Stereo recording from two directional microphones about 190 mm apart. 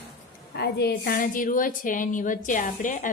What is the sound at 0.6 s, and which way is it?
A woman's voice, 60° left (ahead or behind).